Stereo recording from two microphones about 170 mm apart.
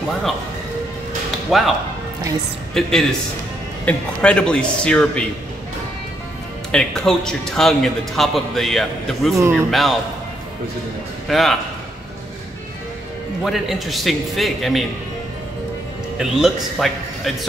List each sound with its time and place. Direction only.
1.5 s speech: centre (ahead or behind)
2.7 s speech: centre (ahead or behind)
6.7 s speech: 5° left (ahead or behind)
9.3 s speech: 15° right (ahead or behind)
9.7 s speech: centre (ahead or behind)
11.2 s speech: centre (ahead or behind)
13.4 s speech: centre (ahead or behind)
16.2 s speech: centre (ahead or behind)